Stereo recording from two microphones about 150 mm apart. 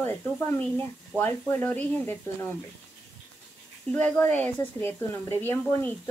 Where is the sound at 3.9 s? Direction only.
10° left (ahead or behind).